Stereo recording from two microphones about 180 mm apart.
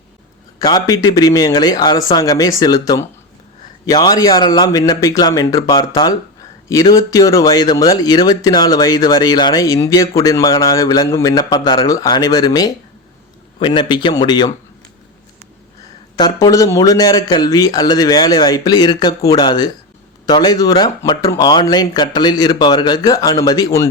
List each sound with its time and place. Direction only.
0.6 s speech: 20° left (ahead or behind)
16.1 s speech: 20° left (ahead or behind)